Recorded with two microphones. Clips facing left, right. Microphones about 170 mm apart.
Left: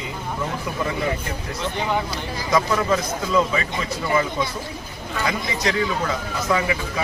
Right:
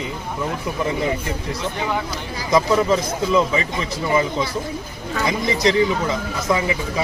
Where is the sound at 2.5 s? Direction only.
20° right (ahead or behind).